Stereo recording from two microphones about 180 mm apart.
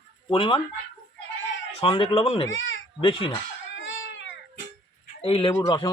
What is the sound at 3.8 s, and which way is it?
Baby cry, 90° left.